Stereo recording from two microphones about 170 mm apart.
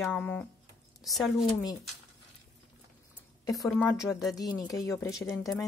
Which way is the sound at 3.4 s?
20° left (ahead or behind).